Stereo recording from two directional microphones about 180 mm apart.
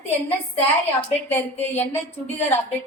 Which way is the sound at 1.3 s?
10° left (ahead or behind).